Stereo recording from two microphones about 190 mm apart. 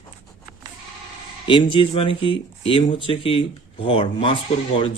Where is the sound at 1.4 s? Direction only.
25° left (ahead or behind).